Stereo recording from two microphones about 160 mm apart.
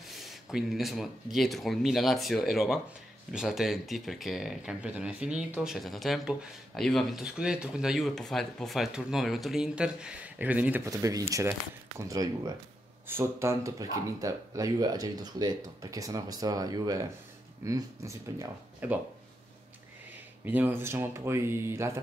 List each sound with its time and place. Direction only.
0.1 s speech: centre (ahead or behind)
20.4 s speech: 10° right (ahead or behind)